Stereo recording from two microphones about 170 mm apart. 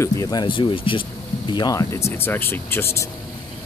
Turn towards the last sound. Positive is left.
turn(degrees=15)  # may be behind; listen again after turning